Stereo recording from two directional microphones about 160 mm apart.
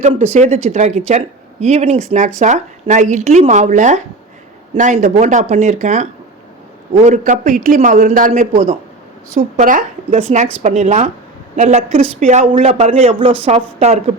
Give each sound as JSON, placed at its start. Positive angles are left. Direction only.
{"t": 0.1, "sound": "a man's voice", "side_deg": -40}
{"t": 8.4, "sound": "speech", "side_deg": -45}
{"t": 9.3, "sound": "speech", "side_deg": -55}
{"t": 10.1, "sound": "speech", "side_deg": -40}